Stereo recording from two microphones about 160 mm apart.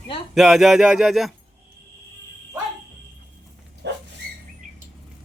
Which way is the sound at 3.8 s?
90° right.